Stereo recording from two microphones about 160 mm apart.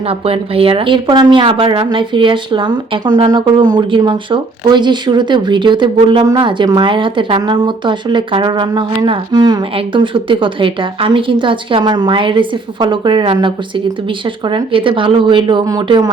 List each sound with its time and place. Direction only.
0.1 s speech: 35° right (ahead or behind)